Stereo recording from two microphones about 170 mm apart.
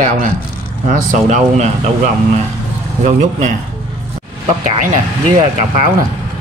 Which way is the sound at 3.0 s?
45° right (ahead or behind).